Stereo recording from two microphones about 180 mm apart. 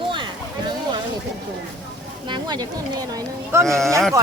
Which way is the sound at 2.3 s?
25° right (ahead or behind).